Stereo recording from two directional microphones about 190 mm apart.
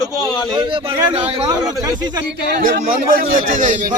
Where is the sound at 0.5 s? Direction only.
25° right (ahead or behind).